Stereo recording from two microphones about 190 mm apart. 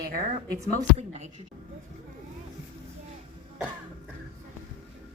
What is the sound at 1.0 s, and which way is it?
Speech, 35° right (ahead or behind).